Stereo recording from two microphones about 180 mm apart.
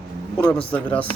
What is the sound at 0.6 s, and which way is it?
Speech, 10° left (ahead or behind).